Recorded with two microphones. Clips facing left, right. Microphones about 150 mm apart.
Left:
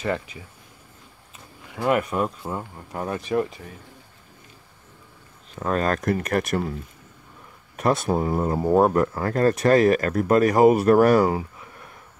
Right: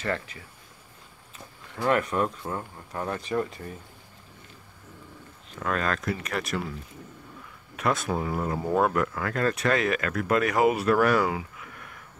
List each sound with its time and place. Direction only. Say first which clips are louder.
0.0 s speech: left 4 dB; 15° left (ahead or behind)
1.7 s speech: left 3 dB; 10° left (ahead or behind)
5.6 s speech: left 5 dB; 35° left (ahead or behind)
7.7 s speech: left 5 dB; 35° left (ahead or behind)